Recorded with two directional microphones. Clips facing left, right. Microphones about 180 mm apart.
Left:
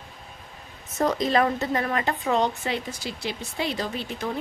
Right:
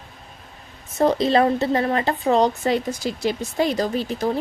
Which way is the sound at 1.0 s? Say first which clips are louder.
Right 5 dB; 30° right (ahead or behind).